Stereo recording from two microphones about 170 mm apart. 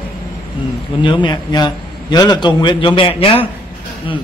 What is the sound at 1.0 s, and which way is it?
A man's voice, 25° left (ahead or behind).